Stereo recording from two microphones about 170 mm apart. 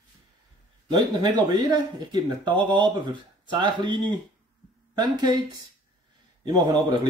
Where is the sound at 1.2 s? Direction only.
25° right (ahead or behind).